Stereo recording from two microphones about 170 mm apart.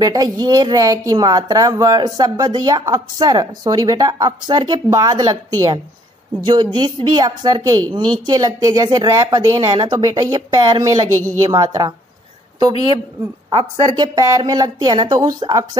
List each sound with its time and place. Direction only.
0.0 s speech: 20° right (ahead or behind)
13.5 s speech: 25° right (ahead or behind)